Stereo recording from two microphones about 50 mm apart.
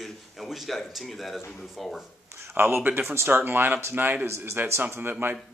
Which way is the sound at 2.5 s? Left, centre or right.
Right.